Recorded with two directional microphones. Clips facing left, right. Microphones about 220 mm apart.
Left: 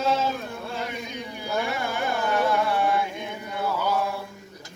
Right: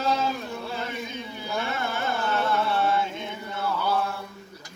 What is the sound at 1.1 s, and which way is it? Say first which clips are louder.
Carnatic music: left 2 dB; 15° left (ahead or behind).